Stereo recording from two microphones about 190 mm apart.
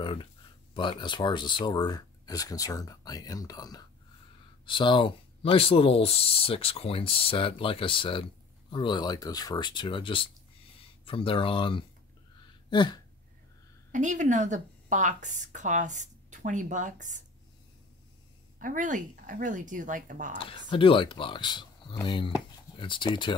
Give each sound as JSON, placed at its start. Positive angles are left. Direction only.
{"t": 0.0, "sound": "speech", "side_deg": 25}
{"t": 12.6, "sound": "a sound", "side_deg": 25}
{"t": 13.9, "sound": "a woman's voice", "side_deg": -40}
{"t": 18.6, "sound": "speech", "side_deg": -45}
{"t": 20.3, "sound": "speech", "side_deg": 25}